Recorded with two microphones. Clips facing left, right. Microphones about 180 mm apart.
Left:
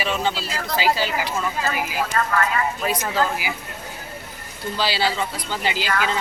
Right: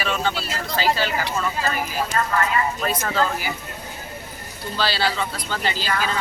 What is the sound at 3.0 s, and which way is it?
Speech, 10° left (ahead or behind).